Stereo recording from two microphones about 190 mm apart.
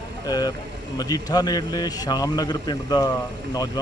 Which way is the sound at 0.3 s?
20° left (ahead or behind).